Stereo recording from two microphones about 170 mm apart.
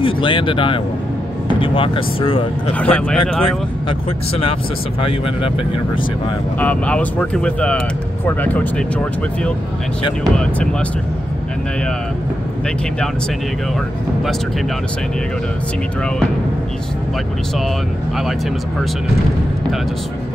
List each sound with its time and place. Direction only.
0.0 s speech: 30° left (ahead or behind)
2.8 s speech: 10° left (ahead or behind)
6.6 s speech: 10° left (ahead or behind)
10.3 s speech: 5° left (ahead or behind)